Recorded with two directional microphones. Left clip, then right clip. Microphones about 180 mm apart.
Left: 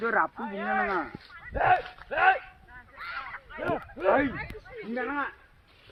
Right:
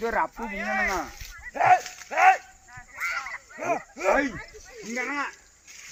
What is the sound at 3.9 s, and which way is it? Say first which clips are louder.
Speech: even; 25° right (ahead or behind).